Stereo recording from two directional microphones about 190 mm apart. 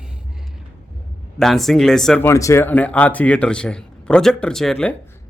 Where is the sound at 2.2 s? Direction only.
15° left (ahead or behind).